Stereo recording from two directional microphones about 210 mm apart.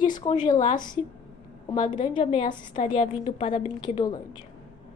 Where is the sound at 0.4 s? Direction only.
40° left (ahead or behind).